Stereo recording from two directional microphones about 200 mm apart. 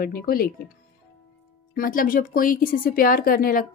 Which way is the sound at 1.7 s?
45° left (ahead or behind).